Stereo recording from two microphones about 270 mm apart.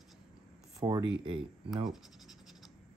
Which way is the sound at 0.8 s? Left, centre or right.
Centre.